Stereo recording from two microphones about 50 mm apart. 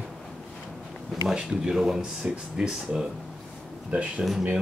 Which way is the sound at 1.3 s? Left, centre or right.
Centre.